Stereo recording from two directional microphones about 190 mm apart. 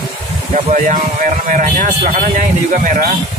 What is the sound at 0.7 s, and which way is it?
A man's voice, 40° right (ahead or behind).